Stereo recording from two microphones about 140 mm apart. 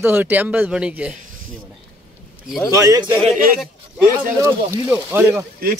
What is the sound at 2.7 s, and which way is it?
Speech, 25° right (ahead or behind).